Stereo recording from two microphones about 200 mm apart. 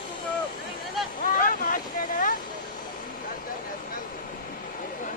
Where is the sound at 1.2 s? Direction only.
45° left (ahead or behind).